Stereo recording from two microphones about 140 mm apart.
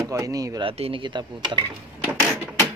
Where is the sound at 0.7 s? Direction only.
40° right (ahead or behind).